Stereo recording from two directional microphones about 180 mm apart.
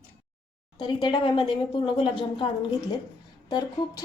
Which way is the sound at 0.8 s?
25° left (ahead or behind).